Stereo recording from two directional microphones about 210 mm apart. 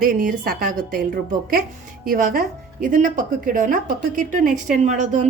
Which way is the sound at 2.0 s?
40° right (ahead or behind).